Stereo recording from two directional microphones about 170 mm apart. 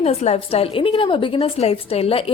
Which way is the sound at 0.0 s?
40° left (ahead or behind).